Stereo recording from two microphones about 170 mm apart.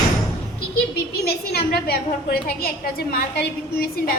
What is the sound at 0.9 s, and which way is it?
A woman's voice, 65° left (ahead or behind).